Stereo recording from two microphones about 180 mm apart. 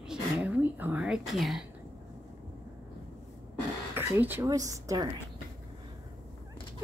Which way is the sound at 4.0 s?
10° right (ahead or behind).